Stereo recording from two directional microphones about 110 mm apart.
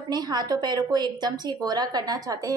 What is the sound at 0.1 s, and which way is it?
A woman's voice, 40° right (ahead or behind).